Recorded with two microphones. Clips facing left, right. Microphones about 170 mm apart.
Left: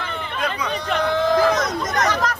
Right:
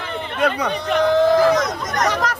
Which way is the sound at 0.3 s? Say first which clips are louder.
Right 6 dB; 70° right (ahead or behind).